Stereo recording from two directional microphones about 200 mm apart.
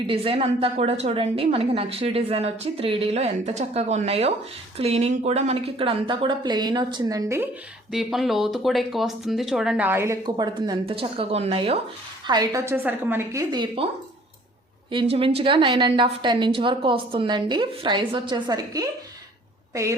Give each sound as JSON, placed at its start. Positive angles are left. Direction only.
{"t": 0.1, "sound": "a woman's voice", "side_deg": -30}
{"t": 7.9, "sound": "a woman's voice", "side_deg": 0}
{"t": 12.3, "sound": "a woman's voice", "side_deg": -20}
{"t": 14.8, "sound": "a woman's voice", "side_deg": -25}